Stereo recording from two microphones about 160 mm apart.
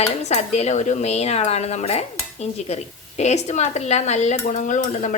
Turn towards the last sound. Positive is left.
turn(degrees=50)  # may be behind; listen again after turning